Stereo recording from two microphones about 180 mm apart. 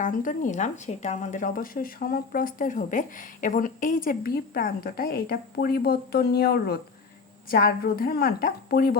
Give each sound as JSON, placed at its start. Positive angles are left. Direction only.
{"t": 0.0, "sound": "a woman's voice", "side_deg": 45}